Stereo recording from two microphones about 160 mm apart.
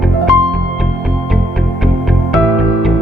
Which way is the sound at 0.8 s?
Centre (ahead or behind).